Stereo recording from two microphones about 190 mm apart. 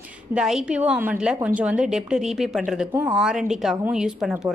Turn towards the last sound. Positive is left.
turn(degrees=-5)  # may be behind; listen again after turning